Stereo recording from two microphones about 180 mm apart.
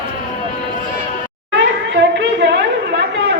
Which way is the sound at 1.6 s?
75° right (ahead or behind).